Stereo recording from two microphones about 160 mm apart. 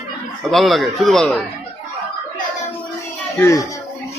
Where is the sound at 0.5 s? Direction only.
Centre (ahead or behind).